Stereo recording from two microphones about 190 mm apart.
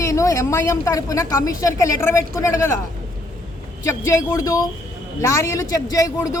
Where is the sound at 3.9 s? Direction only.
15° left (ahead or behind).